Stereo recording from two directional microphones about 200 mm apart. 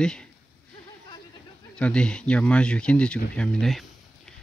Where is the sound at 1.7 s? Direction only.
5° left (ahead or behind).